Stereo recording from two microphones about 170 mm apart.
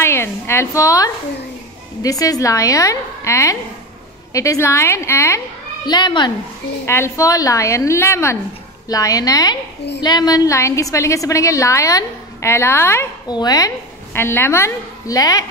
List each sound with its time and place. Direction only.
0.0 s a woman's voice: 15° left (ahead or behind)